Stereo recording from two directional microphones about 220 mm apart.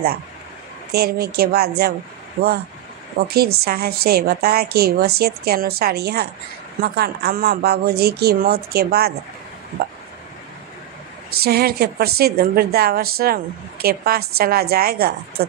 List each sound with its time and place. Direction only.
0.9 s a woman's voice: 45° right (ahead or behind)
2.4 s a woman's voice: 35° right (ahead or behind)
11.4 s a woman's voice: 45° right (ahead or behind)